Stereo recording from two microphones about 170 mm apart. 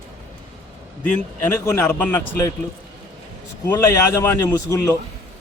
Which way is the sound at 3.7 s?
15° left (ahead or behind).